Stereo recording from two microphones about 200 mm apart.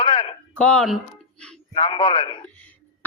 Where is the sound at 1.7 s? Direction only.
25° left (ahead or behind).